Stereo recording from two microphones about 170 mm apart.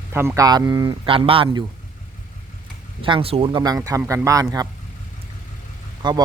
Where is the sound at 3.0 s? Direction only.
30° right (ahead or behind).